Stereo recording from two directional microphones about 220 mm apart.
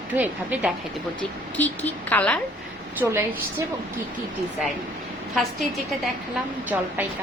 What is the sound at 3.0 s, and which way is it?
Speech, 10° right (ahead or behind).